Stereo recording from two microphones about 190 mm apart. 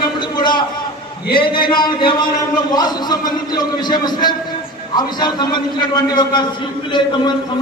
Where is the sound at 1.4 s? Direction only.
25° left (ahead or behind).